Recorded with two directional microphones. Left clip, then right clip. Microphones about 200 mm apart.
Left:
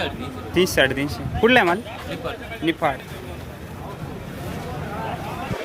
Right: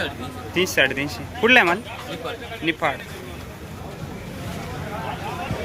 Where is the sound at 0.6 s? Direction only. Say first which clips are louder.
Left 1 dB; 25° left (ahead or behind).